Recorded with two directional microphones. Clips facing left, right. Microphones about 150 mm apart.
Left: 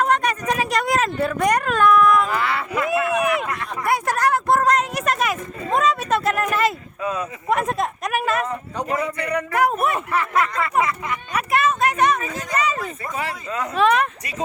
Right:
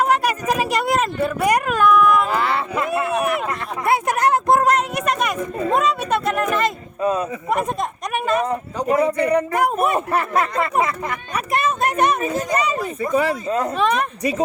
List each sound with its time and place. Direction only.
0.0 s speech: 10° right (ahead or behind)
2.3 s a sound: 30° right (ahead or behind)
4.7 s a sound: centre (ahead or behind)
7.0 s speech: 40° right (ahead or behind)
7.5 s speech: centre (ahead or behind)
9.0 s a man's voice: 30° right (ahead or behind)
9.9 s speech: 40° right (ahead or behind)
11.3 s a woman's voice: 5° left (ahead or behind)